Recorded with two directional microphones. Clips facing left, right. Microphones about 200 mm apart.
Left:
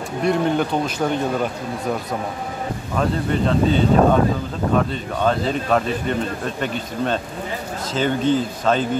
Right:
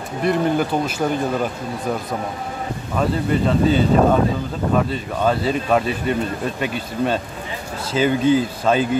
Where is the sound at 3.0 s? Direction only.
5° right (ahead or behind).